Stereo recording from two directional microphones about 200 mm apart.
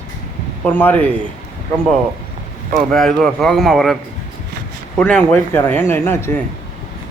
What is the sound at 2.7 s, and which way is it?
Speech, centre (ahead or behind).